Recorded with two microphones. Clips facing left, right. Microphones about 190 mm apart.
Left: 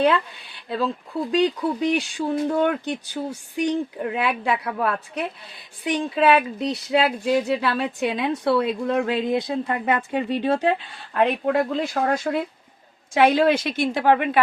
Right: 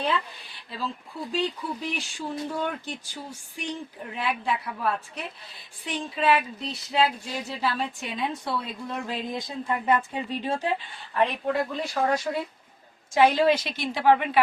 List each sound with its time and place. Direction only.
1.3 s a woman's voice: 65° left (ahead or behind); by 14.3 s 50° left (ahead or behind)